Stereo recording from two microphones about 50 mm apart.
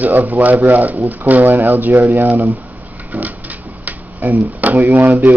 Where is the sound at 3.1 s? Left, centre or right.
Right.